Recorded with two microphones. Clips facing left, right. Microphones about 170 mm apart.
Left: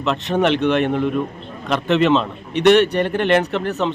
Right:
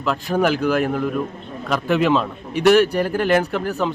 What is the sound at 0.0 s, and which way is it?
A man's voice, 5° right (ahead or behind).